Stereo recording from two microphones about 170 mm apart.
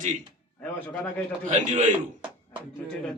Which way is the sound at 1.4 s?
45° right (ahead or behind).